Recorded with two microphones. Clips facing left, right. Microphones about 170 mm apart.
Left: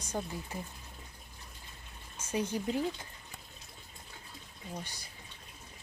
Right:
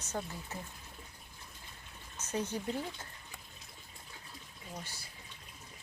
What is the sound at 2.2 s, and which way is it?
Speech, 10° left (ahead or behind).